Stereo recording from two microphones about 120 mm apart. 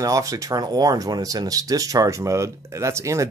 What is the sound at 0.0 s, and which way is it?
Speech, 25° right (ahead or behind).